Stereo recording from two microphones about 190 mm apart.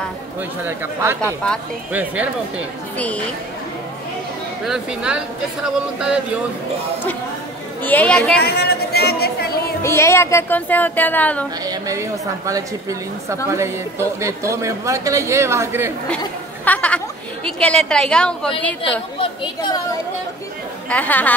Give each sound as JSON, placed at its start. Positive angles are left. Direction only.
{"t": 0.4, "sound": "a man's voice", "side_deg": -10}
{"t": 4.6, "sound": "a woman's voice", "side_deg": -5}
{"t": 7.8, "sound": "a woman's voice", "side_deg": 10}
{"t": 8.4, "sound": "speech", "side_deg": 55}
{"t": 9.8, "sound": "speech", "side_deg": 15}
{"t": 11.6, "sound": "a man's voice", "side_deg": -20}
{"t": 16.6, "sound": "a woman's voice", "side_deg": 5}
{"t": 18.8, "sound": "a woman's voice", "side_deg": 30}
{"t": 20.9, "sound": "speech", "side_deg": 10}